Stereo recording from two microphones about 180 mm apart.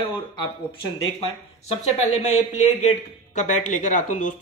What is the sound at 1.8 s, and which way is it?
Speech, 40° left (ahead or behind).